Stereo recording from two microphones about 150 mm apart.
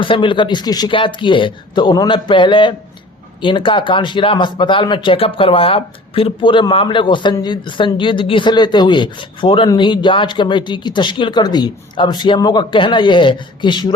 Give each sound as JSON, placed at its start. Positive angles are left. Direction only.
{"t": 0.0, "sound": "speech", "side_deg": 35}